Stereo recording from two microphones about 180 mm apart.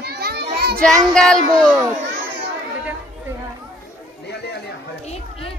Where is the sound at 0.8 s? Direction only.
5° left (ahead or behind).